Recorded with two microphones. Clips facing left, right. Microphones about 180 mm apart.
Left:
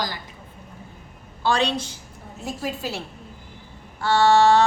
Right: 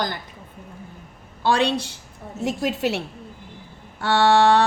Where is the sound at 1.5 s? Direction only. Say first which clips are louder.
Right 2 dB; 55° right (ahead or behind).